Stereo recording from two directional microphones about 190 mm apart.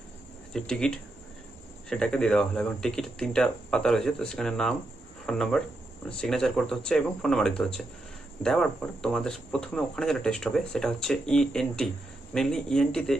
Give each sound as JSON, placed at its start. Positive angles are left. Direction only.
{"t": 0.5, "sound": "speech", "side_deg": 5}